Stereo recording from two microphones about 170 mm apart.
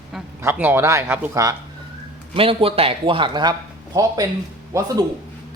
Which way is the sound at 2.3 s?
35° right (ahead or behind).